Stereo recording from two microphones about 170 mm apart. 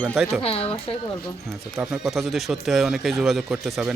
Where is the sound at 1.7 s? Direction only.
5° right (ahead or behind).